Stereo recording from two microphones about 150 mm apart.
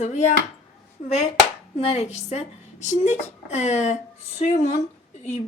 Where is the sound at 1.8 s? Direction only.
45° left (ahead or behind).